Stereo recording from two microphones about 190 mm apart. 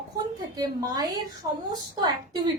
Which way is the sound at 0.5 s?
20° right (ahead or behind).